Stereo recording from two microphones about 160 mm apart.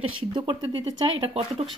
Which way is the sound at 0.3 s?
30° right (ahead or behind).